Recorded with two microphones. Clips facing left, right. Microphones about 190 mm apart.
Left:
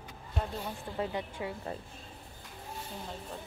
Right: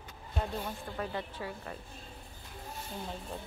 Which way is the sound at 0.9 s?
20° left (ahead or behind).